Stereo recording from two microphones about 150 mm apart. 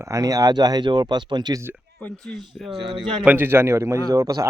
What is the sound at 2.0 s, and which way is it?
Speech, centre (ahead or behind).